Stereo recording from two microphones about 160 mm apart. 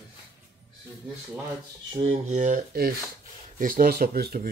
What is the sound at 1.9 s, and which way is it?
Speech, 45° right (ahead or behind).